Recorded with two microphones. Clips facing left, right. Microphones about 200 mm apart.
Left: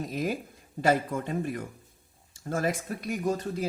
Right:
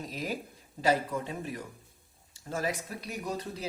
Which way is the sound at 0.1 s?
50° left (ahead or behind).